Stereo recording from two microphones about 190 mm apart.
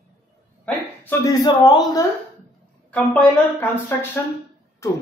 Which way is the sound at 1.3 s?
20° left (ahead or behind).